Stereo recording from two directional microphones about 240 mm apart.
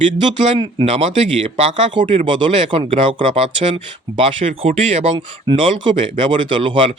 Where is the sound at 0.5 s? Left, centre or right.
Right.